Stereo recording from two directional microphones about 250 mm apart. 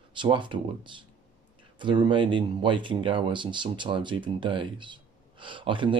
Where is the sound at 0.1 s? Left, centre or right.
Centre.